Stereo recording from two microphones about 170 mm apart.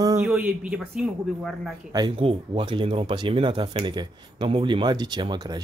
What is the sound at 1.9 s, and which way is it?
Speech, 30° right (ahead or behind).